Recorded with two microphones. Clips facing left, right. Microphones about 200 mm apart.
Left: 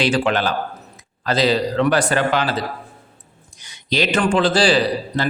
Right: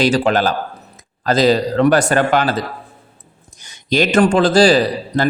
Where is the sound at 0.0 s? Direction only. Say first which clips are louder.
Right 4 dB; 40° right (ahead or behind).